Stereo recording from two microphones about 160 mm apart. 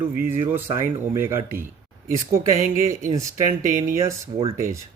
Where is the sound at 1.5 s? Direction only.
60° right (ahead or behind).